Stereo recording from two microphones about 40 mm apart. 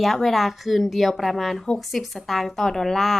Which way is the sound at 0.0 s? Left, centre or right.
Centre.